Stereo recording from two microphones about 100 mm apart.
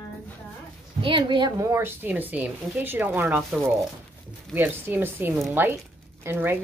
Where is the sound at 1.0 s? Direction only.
55° right (ahead or behind).